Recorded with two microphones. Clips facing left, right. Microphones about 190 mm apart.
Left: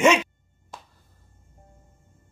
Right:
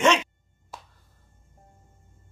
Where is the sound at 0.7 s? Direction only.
5° right (ahead or behind).